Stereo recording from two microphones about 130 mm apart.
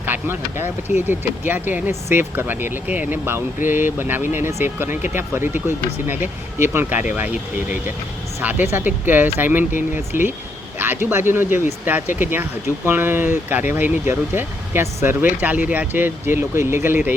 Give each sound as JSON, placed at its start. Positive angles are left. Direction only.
{"t": 0.0, "sound": "speech", "side_deg": -15}
{"t": 8.4, "sound": "speech", "side_deg": -15}